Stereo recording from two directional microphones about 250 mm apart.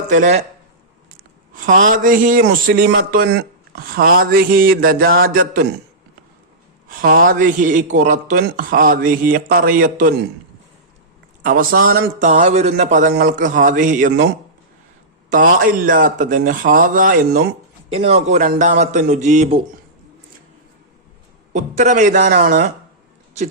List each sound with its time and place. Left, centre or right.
0.1 s a man's voice: right
1.5 s a sound: right
1.9 s speech: right
6.8 s speech: right
11.4 s speech: right
15.3 s speech: right
17.8 s a man's voice: right
21.5 s a man's voice: right